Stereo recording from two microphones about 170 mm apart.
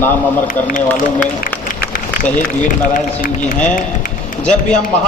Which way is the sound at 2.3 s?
50° left (ahead or behind).